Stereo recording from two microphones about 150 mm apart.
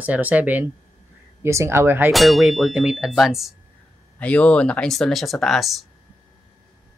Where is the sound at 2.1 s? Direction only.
Centre (ahead or behind).